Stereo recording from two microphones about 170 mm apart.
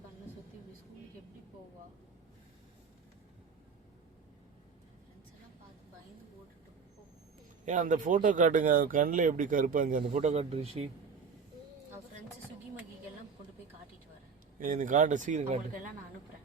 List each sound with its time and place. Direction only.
7.6 s speech: 45° right (ahead or behind)
14.6 s speech: 50° right (ahead or behind)